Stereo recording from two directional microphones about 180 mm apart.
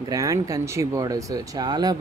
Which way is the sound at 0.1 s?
20° right (ahead or behind).